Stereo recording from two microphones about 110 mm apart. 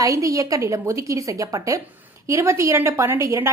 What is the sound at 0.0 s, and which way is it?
A woman's voice, 30° right (ahead or behind).